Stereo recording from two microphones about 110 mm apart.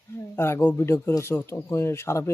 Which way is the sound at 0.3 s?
20° left (ahead or behind).